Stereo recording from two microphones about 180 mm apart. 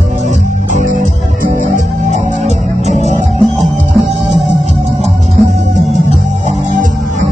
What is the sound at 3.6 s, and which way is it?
Music, centre (ahead or behind).